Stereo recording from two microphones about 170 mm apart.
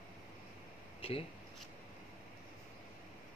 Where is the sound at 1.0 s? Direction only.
35° left (ahead or behind).